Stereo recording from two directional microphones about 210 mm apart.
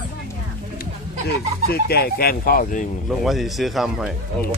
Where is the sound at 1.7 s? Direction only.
50° left (ahead or behind).